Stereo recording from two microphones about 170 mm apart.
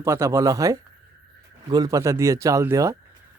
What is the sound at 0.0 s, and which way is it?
Speech, 15° right (ahead or behind).